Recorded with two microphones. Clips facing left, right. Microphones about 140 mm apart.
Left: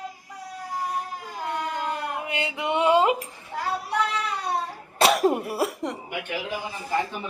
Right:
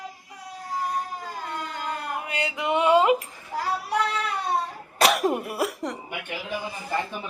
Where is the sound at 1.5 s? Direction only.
20° left (ahead or behind).